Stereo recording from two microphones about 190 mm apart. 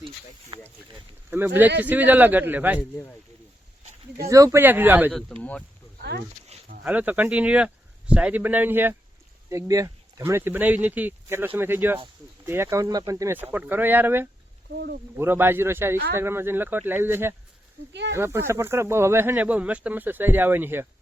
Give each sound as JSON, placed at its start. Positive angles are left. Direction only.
{"t": 0.5, "sound": "speech", "side_deg": -25}
{"t": 1.3, "sound": "speech", "side_deg": -10}
{"t": 4.2, "sound": "speech", "side_deg": -15}
{"t": 5.1, "sound": "speech", "side_deg": 5}
{"t": 6.0, "sound": "a sound", "side_deg": -55}
{"t": 6.8, "sound": "speech", "side_deg": -5}
{"t": 14.8, "sound": "speech", "side_deg": -55}
{"t": 15.2, "sound": "speech", "side_deg": -10}